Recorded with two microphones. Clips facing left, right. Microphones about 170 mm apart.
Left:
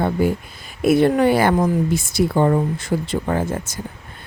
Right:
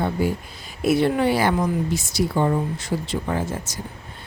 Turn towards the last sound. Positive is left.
turn(degrees=55)  # may be behind; listen again after turning